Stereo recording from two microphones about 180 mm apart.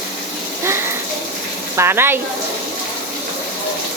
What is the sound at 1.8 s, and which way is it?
Speech, 15° right (ahead or behind).